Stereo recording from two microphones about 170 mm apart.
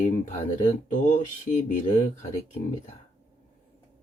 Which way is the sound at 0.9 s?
50° left (ahead or behind).